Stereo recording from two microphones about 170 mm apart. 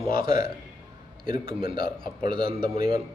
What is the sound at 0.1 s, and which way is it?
A man's voice, 30° right (ahead or behind).